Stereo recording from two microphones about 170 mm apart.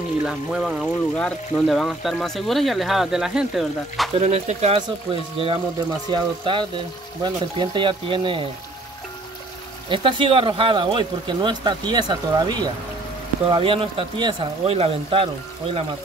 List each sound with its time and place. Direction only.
0.2 s speech: 5° right (ahead or behind)
4.1 s speech: 40° right (ahead or behind)
9.8 s speech: 30° right (ahead or behind)